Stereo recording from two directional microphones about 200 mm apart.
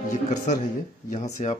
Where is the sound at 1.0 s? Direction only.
35° left (ahead or behind).